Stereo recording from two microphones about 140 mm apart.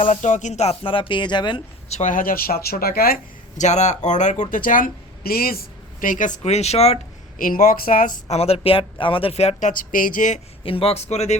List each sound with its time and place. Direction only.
0.0 s speech: 60° left (ahead or behind); by 1.6 s 35° left (ahead or behind)
1.9 s speech: 60° left (ahead or behind); by 3.2 s 90° left
3.6 s speech: 55° left (ahead or behind)
7.3 s speech: 80° left
8.3 s speech: 50° left (ahead or behind); by 10.4 s 65° left (ahead or behind)
10.6 s speech: 40° left (ahead or behind)